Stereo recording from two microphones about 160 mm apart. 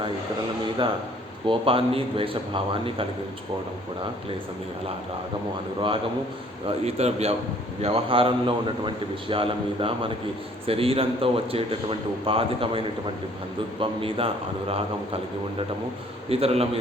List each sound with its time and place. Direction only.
1.5 s a man's voice: 35° right (ahead or behind)
6.8 s a man's voice: 40° right (ahead or behind)